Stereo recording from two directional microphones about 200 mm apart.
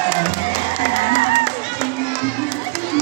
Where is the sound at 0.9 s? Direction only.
35° left (ahead or behind).